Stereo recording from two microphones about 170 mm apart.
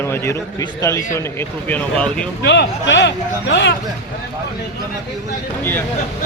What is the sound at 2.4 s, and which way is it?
Speech, 90° left.